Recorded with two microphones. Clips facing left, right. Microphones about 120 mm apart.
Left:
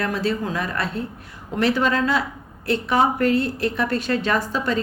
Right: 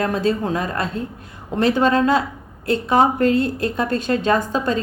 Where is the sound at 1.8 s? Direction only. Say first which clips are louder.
Right 4 dB; 35° right (ahead or behind).